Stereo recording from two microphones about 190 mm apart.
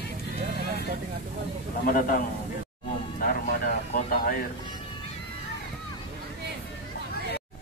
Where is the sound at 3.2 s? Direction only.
50° left (ahead or behind).